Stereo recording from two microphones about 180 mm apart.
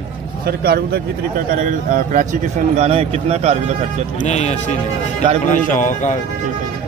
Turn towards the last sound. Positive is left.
turn(degrees=45)  # may be behind; listen again after turning